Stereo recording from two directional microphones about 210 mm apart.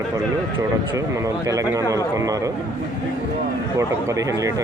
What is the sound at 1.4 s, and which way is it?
Speech, 15° right (ahead or behind).